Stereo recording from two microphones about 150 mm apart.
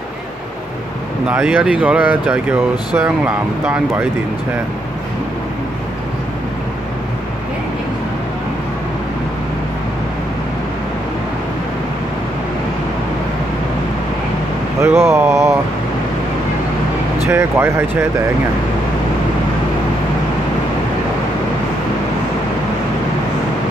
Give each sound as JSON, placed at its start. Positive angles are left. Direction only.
{"t": 1.3, "sound": "speech", "side_deg": -10}
{"t": 14.8, "sound": "speech", "side_deg": -15}
{"t": 17.3, "sound": "speech", "side_deg": -15}